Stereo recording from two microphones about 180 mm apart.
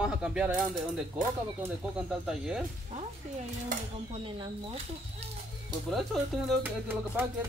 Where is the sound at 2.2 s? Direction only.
5° right (ahead or behind).